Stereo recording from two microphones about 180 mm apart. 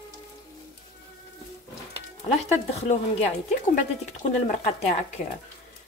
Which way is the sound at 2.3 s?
35° left (ahead or behind).